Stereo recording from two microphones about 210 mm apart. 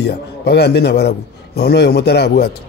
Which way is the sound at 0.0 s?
50° left (ahead or behind).